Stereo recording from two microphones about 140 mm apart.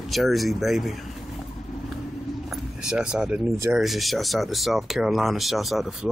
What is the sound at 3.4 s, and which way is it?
Speech, 20° right (ahead or behind).